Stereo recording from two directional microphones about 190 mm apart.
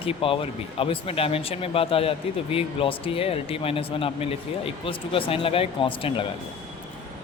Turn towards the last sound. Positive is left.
turn(degrees=30)  # may be behind; listen again after turning